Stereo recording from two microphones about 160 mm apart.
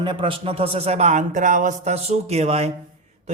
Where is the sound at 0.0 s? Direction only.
30° right (ahead or behind).